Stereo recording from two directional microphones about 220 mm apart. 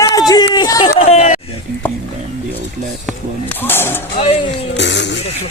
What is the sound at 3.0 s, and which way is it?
Speech, 5° left (ahead or behind).